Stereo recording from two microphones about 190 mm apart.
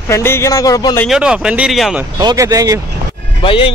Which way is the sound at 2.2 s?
20° right (ahead or behind).